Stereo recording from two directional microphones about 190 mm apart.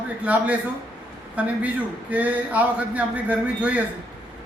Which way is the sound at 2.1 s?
10° right (ahead or behind).